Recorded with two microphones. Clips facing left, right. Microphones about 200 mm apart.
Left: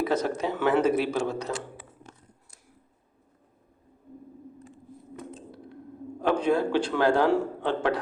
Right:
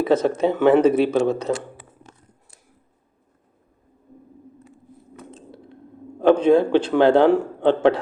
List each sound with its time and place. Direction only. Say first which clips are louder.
0.0 s a man's voice: right 8 dB; 25° right (ahead or behind)
6.4 s a man's voice: right 8 dB; 25° right (ahead or behind)